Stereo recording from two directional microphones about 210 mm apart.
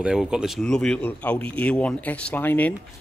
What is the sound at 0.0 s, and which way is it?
Speech, 5° right (ahead or behind).